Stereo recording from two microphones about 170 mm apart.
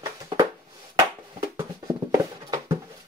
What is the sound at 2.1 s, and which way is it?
Music, 20° right (ahead or behind).